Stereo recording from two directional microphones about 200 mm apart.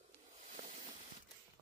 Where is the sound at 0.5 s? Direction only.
35° right (ahead or behind).